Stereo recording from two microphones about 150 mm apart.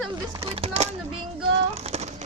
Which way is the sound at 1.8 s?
45° right (ahead or behind).